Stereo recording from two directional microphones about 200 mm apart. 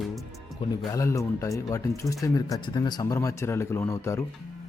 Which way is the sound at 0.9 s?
15° left (ahead or behind).